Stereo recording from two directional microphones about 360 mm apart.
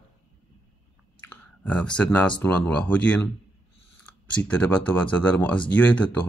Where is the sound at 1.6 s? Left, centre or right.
Centre.